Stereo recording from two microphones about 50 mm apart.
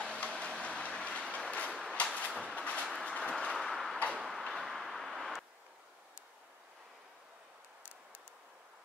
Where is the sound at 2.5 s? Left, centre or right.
Left.